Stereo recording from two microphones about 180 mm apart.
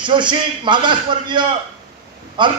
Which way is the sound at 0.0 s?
25° right (ahead or behind).